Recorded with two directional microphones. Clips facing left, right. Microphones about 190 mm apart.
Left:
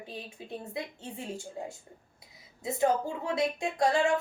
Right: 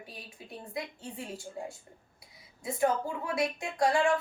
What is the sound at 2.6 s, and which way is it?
Speech, 25° left (ahead or behind).